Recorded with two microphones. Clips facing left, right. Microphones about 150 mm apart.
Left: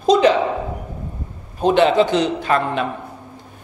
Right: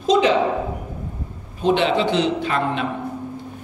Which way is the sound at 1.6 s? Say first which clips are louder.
Left 4 dB; 45° left (ahead or behind).